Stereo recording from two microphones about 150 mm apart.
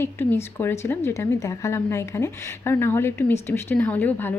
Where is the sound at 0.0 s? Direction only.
15° left (ahead or behind).